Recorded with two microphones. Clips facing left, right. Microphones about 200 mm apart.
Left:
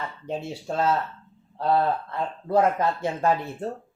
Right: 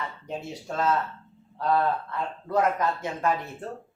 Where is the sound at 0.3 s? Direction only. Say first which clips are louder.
Left 6 dB; 30° left (ahead or behind).